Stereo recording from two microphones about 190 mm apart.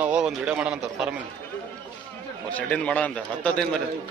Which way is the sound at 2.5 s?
5° left (ahead or behind).